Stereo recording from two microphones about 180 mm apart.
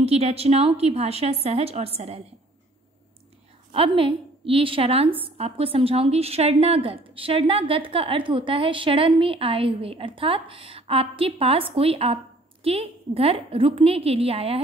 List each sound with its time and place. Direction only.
0.0 s a woman's voice: 35° right (ahead or behind)
3.7 s a woman's voice: 30° right (ahead or behind)